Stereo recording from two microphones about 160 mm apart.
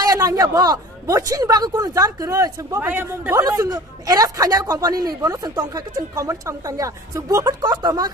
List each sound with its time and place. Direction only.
0.0 s a man's voice: 25° right (ahead or behind)
3.3 s speech: 25° right (ahead or behind)